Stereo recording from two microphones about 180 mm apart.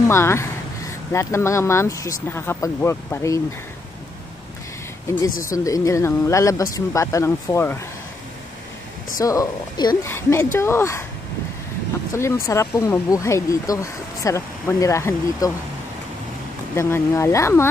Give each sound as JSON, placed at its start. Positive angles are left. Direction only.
{"t": 0.1, "sound": "speech", "side_deg": 15}
{"t": 5.5, "sound": "speech", "side_deg": 20}
{"t": 9.2, "sound": "speech", "side_deg": 20}
{"t": 12.1, "sound": "speech", "side_deg": 15}
{"t": 16.7, "sound": "speech", "side_deg": 15}